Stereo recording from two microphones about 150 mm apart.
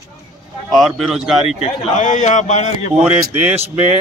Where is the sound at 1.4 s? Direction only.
50° left (ahead or behind).